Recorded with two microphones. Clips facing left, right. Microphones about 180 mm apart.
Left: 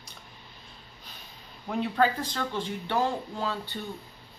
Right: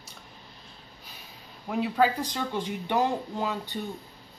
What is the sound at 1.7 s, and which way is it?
Speech, 5° right (ahead or behind).